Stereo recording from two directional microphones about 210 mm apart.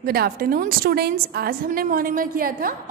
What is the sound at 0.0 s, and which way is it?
A woman's voice, 45° right (ahead or behind).